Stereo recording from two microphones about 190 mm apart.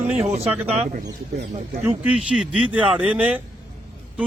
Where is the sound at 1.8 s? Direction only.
5° right (ahead or behind).